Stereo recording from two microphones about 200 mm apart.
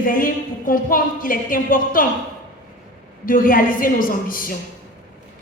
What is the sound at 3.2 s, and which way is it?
A woman's voice, 45° left (ahead or behind).